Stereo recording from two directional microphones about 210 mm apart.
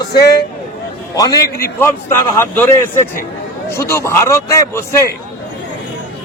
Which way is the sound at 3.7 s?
15° left (ahead or behind).